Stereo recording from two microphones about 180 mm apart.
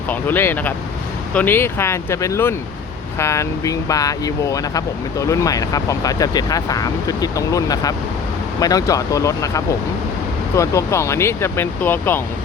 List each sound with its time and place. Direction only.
0.1 s speech: 10° left (ahead or behind)